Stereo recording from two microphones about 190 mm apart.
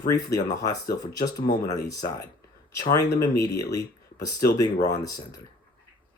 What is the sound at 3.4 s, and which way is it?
Speech, 20° left (ahead or behind).